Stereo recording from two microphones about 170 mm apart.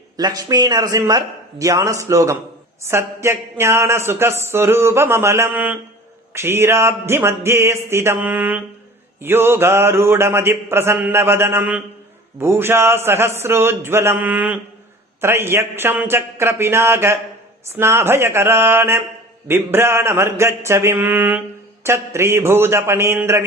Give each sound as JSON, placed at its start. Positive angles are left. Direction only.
{"t": 0.2, "sound": "speech", "side_deg": -25}